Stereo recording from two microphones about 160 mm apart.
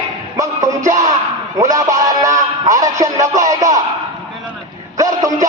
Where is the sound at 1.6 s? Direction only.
20° right (ahead or behind).